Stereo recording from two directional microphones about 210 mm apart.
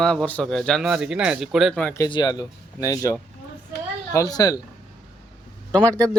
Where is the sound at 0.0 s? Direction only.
5° left (ahead or behind).